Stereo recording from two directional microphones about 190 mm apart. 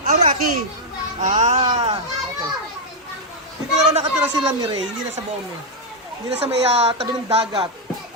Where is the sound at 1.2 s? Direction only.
40° right (ahead or behind).